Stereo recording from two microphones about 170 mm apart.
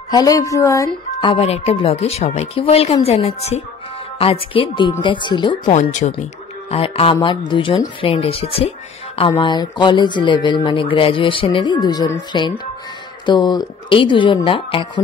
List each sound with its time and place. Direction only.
0.1 s speech: 20° left (ahead or behind)
1.2 s speech: 35° left (ahead or behind)
5.7 s speech: 45° left (ahead or behind)
6.7 s speech: 35° left (ahead or behind)